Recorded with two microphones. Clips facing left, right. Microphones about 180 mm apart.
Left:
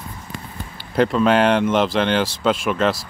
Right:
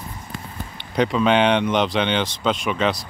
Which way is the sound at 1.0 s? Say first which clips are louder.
Left 2 dB; centre (ahead or behind).